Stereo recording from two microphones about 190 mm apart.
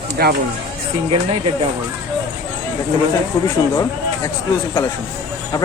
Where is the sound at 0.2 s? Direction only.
50° right (ahead or behind).